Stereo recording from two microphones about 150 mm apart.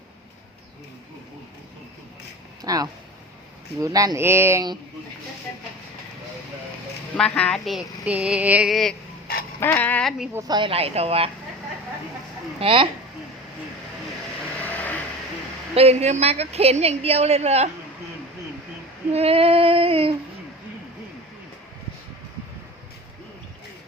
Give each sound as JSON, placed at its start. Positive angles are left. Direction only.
{"t": 2.6, "sound": "speech", "side_deg": -25}
{"t": 7.2, "sound": "female singing", "side_deg": 5}
{"t": 9.6, "sound": "speech", "side_deg": 10}
{"t": 10.3, "sound": "speech", "side_deg": -25}
{"t": 10.7, "sound": "speech", "side_deg": -40}
{"t": 12.5, "sound": "speech", "side_deg": -35}
{"t": 14.6, "sound": "vehicle", "side_deg": 10}
{"t": 15.7, "sound": "a woman's voice", "side_deg": -45}
{"t": 19.1, "sound": "female singing", "side_deg": -40}